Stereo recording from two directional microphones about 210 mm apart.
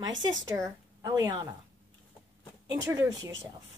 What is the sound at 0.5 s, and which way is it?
Speech, 15° right (ahead or behind).